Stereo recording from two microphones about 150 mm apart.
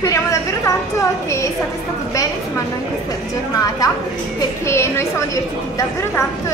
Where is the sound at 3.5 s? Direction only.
25° left (ahead or behind).